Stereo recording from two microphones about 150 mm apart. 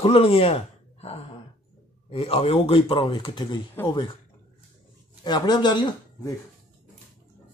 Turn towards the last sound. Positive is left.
turn(degrees=30)  # may be behind; listen again after turning